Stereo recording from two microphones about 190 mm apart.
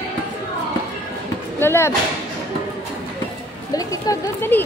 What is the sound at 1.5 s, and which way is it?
Speech, 10° left (ahead or behind).